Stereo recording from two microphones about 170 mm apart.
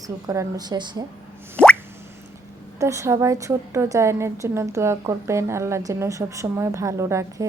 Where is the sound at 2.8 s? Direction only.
15° right (ahead or behind).